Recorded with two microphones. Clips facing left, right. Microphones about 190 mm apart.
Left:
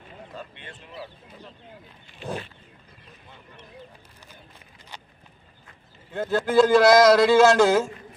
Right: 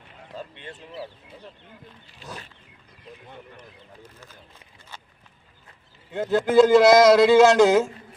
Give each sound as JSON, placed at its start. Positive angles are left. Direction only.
{"t": 0.3, "sound": "a sound", "side_deg": -30}
{"t": 4.0, "sound": "speech", "side_deg": 15}
{"t": 6.1, "sound": "a man's voice", "side_deg": -20}